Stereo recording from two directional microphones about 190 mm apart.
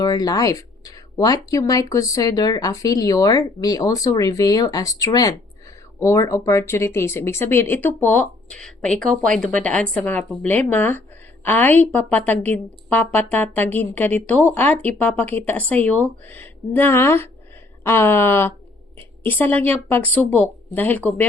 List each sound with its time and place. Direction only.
0.0 s speech: 20° left (ahead or behind)